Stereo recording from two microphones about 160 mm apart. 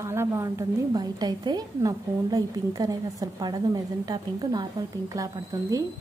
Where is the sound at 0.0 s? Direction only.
15° right (ahead or behind).